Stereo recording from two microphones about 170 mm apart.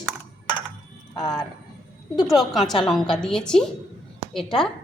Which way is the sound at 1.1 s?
25° left (ahead or behind).